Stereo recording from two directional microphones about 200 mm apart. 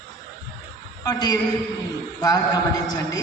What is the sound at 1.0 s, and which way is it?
A man's voice, 20° left (ahead or behind).